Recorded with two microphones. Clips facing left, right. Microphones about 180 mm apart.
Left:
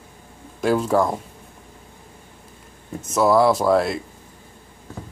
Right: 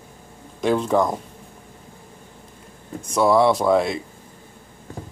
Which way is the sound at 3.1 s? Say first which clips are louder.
Even; centre (ahead or behind).